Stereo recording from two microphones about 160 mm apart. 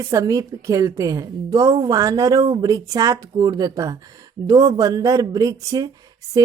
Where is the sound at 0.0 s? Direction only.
20° right (ahead or behind).